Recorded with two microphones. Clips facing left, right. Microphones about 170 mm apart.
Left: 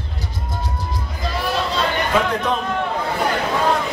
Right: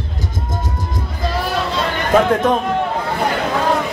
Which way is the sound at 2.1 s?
45° right (ahead or behind).